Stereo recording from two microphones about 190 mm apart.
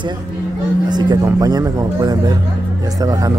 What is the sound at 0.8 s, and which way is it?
Speech, 20° right (ahead or behind).